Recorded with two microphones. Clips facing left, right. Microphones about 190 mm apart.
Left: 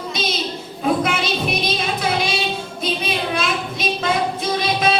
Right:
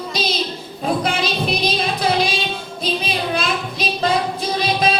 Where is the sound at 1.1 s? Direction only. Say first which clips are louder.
Right 1 dB; 35° right (ahead or behind).